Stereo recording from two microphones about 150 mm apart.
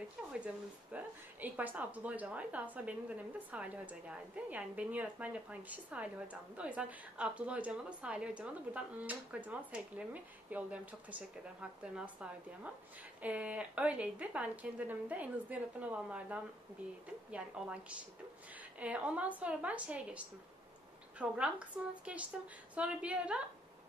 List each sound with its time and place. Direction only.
0.9 s a woman's voice: 10° right (ahead or behind)